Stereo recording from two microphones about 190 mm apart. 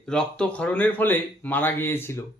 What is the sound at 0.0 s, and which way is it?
Speech, 5° left (ahead or behind).